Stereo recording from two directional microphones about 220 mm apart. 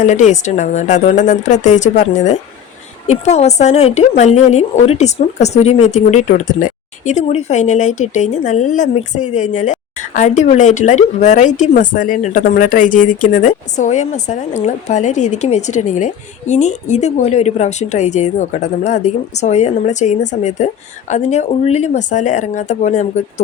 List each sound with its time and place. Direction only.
0.0 s speech: 35° left (ahead or behind)